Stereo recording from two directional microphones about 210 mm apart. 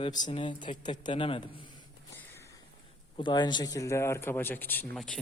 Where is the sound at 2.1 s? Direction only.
10° left (ahead or behind).